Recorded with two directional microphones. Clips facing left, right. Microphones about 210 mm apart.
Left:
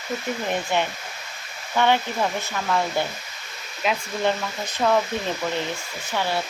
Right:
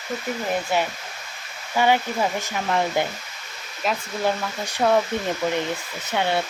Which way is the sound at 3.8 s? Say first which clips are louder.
Left 1 dB; centre (ahead or behind).